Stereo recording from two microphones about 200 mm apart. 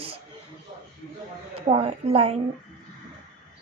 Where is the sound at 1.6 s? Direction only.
30° right (ahead or behind).